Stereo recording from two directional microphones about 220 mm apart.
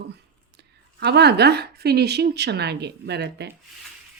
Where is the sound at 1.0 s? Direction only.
50° right (ahead or behind).